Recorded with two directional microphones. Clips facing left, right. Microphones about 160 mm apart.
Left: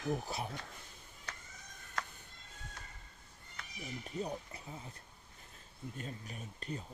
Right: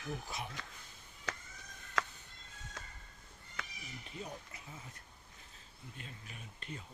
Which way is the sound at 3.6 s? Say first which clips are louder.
Right 5 dB; 90° right.